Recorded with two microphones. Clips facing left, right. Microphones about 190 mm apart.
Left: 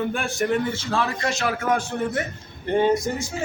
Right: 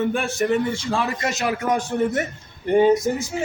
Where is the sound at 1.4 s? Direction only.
15° right (ahead or behind).